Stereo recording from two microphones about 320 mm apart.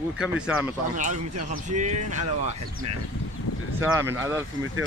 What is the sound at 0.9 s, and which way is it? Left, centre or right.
Speech, right.